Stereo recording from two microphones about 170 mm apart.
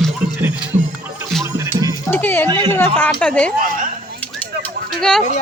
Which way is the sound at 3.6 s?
50° right (ahead or behind).